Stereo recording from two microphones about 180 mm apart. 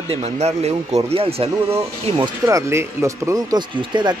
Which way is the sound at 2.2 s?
20° right (ahead or behind).